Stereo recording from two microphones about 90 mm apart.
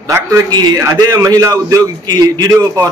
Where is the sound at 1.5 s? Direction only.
50° right (ahead or behind).